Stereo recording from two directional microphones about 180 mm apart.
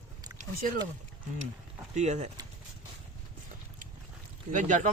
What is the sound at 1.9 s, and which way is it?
Speech, 40° right (ahead or behind).